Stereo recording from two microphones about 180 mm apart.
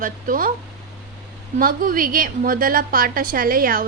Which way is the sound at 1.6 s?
50° right (ahead or behind).